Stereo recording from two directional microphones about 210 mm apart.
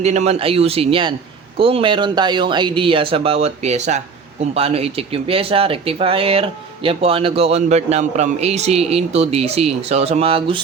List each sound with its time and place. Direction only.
0.0 s speech: 30° right (ahead or behind)